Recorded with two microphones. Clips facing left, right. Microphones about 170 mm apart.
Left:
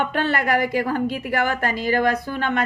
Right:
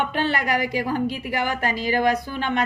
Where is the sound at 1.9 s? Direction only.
15° right (ahead or behind).